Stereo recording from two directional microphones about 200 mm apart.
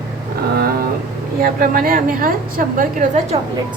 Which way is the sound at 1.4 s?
45° right (ahead or behind).